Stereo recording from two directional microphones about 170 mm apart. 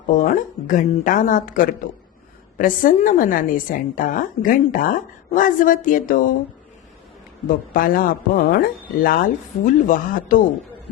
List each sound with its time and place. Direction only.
0.1 s a woman's voice: 50° left (ahead or behind)
7.4 s speech: 55° left (ahead or behind)